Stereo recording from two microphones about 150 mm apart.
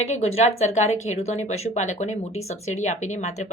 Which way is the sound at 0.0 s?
45° left (ahead or behind).